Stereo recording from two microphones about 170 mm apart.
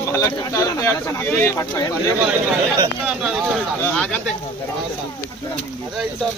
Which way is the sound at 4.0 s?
5° left (ahead or behind).